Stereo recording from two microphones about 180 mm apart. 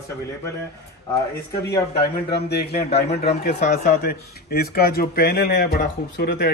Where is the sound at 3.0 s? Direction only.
35° left (ahead or behind).